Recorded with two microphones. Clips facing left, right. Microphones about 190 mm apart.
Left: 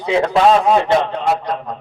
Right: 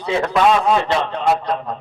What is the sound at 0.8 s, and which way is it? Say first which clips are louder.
Speech: left 4 dB; 20° left (ahead or behind).